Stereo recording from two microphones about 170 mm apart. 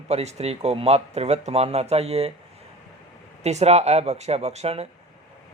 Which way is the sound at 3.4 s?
40° right (ahead or behind).